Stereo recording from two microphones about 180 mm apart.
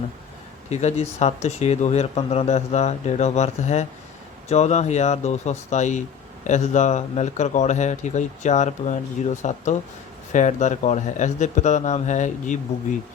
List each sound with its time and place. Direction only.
0.7 s speech: 40° left (ahead or behind)